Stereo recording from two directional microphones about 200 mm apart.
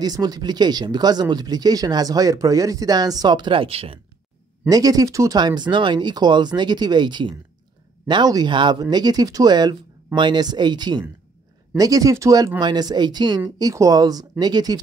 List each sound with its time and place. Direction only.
0.0 s speech: 20° right (ahead or behind)
4.6 s speech: 20° right (ahead or behind)